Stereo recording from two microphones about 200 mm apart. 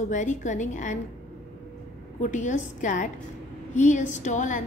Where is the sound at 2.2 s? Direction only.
35° left (ahead or behind).